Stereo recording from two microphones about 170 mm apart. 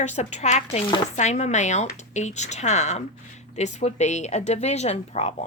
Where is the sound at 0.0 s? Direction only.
45° left (ahead or behind).